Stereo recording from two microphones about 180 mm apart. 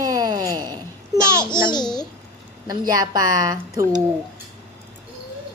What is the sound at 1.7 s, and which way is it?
Speech, 25° left (ahead or behind).